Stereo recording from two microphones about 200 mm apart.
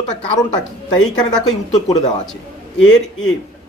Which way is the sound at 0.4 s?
20° left (ahead or behind).